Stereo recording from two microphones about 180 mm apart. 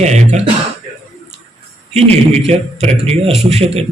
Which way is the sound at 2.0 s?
35° right (ahead or behind).